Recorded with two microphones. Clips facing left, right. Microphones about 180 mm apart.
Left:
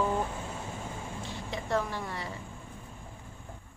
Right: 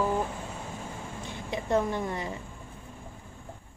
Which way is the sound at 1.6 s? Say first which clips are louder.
Right 5 dB; 20° right (ahead or behind).